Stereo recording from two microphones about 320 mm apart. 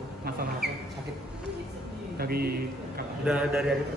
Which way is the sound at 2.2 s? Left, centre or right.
Right.